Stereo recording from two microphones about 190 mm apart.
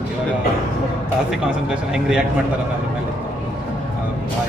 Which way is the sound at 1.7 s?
5° right (ahead or behind).